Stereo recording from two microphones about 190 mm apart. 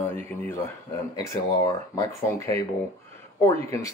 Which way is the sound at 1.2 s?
20° left (ahead or behind).